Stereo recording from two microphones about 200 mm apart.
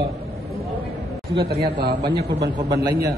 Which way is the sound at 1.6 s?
50° right (ahead or behind).